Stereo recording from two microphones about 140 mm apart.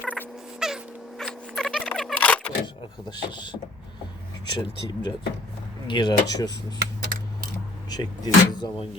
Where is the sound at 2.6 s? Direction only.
35° left (ahead or behind).